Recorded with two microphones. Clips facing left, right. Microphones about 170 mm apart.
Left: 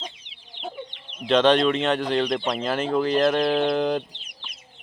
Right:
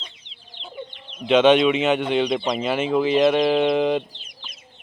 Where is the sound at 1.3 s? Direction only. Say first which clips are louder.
Right 3 dB; 5° right (ahead or behind).